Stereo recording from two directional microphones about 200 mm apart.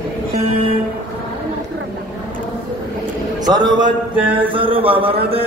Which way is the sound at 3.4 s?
20° right (ahead or behind).